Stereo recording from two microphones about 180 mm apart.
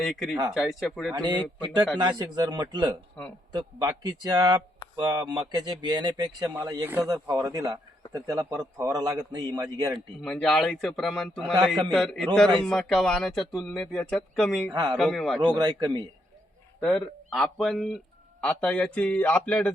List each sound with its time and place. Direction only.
0.0 s speech: centre (ahead or behind)
1.1 s speech: 25° right (ahead or behind)
3.2 s speech: 5° left (ahead or behind)
3.5 s speech: 20° right (ahead or behind)
9.9 s speech: 5° left (ahead or behind)
14.7 s speech: 20° right (ahead or behind)
14.9 s speech: centre (ahead or behind)
15.5 s speech: 25° right (ahead or behind)
16.8 s a man's voice: centre (ahead or behind)